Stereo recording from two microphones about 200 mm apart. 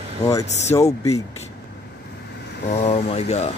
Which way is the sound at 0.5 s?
35° left (ahead or behind).